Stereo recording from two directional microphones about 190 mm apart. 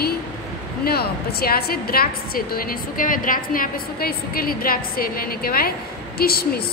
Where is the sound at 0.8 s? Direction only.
55° left (ahead or behind).